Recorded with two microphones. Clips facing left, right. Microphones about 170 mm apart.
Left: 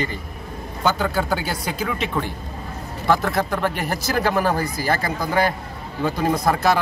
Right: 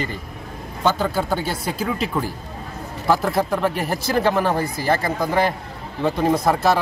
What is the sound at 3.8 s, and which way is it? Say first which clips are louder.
Speech: right 2 dB; 30° right (ahead or behind).